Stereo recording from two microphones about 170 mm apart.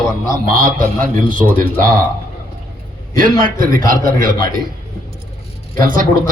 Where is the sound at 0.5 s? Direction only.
55° right (ahead or behind).